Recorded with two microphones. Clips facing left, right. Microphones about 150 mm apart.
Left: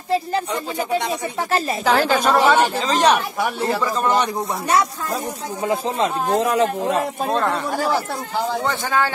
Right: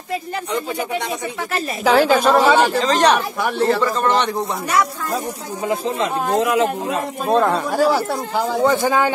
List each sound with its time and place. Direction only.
1.9 s a woman's voice: 5° right (ahead or behind)
4.6 s speech: 25° left (ahead or behind)
7.3 s speech: 5° right (ahead or behind)